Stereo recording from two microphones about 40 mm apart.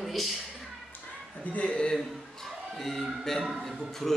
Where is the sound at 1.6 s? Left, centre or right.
Left.